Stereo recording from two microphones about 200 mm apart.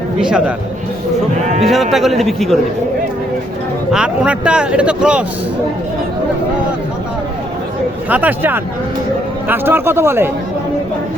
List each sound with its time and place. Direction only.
0.2 s speech: 5° right (ahead or behind)
1.5 s sheep: 30° right (ahead or behind)
1.7 s speech: centre (ahead or behind)
3.9 s speech: 5° right (ahead or behind)
8.1 s speech: 10° right (ahead or behind)